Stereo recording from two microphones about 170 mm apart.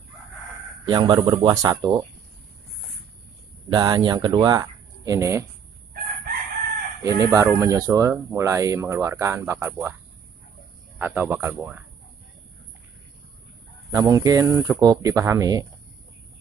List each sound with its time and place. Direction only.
0.8 s speech: 25° right (ahead or behind)
3.6 s speech: 25° right (ahead or behind)
7.0 s speech: 20° right (ahead or behind)
11.0 s speech: 10° right (ahead or behind)
13.9 s speech: 20° right (ahead or behind)